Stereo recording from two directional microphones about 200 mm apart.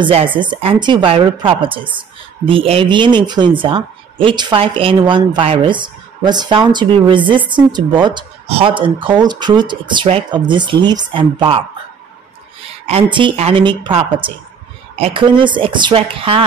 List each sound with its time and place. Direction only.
0.0 s a woman's voice: 25° right (ahead or behind)
12.8 s a woman's voice: 25° right (ahead or behind)